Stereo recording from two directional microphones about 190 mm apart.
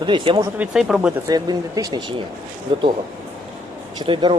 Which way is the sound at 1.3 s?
20° right (ahead or behind).